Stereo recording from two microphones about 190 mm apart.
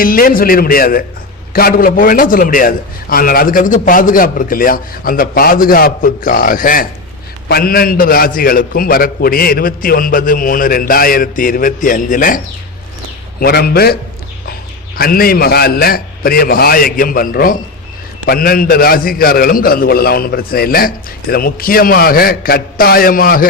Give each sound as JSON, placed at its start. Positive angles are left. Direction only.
{"t": 0.0, "sound": "a man's voice", "side_deg": 50}
{"t": 13.4, "sound": "a man's voice", "side_deg": 55}